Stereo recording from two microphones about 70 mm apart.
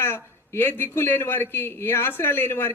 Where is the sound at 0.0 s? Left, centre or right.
Left.